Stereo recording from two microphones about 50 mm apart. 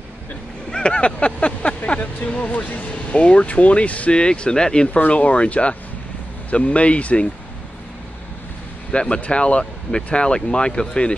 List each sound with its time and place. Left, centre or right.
0.7 s vehicle: centre
2.0 s speech: left
8.9 s speech: left